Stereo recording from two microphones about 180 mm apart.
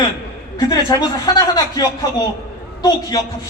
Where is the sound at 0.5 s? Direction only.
20° left (ahead or behind).